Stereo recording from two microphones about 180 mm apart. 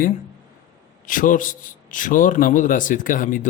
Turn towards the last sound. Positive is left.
turn(degrees=45)  # may be behind; listen again after turning